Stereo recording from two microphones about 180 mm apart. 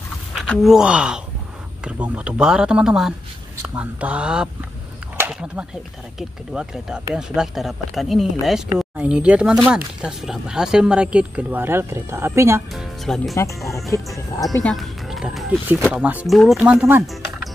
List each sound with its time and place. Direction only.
0.4 s speech: centre (ahead or behind)
12.7 s speech: centre (ahead or behind)
14.1 s speech: 15° left (ahead or behind)
14.6 s speech: centre (ahead or behind)
17.0 s music: centre (ahead or behind)